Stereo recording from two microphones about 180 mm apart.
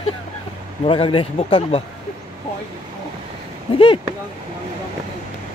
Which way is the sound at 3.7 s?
30° left (ahead or behind).